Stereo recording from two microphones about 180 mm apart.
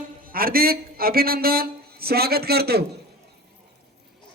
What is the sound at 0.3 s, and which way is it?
Speech, 55° right (ahead or behind).